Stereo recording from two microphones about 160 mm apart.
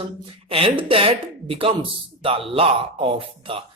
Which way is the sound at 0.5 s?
35° right (ahead or behind).